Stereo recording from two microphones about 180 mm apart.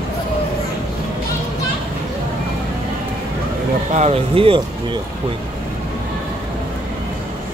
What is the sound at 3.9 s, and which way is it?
Speech, 35° right (ahead or behind).